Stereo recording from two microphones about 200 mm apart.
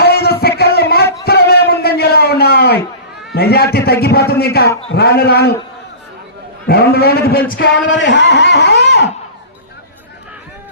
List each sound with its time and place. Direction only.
0.0 s a sound: 55° left (ahead or behind)
3.3 s a man's voice: 50° left (ahead or behind)
6.7 s a man's voice: 50° left (ahead or behind)
7.9 s a man's voice: 65° left (ahead or behind)